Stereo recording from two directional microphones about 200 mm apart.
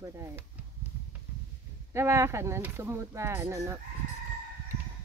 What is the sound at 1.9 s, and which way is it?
Speech, 15° right (ahead or behind).